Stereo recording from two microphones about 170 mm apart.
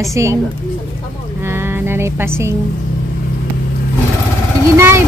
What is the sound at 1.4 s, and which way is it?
Speech, 15° right (ahead or behind).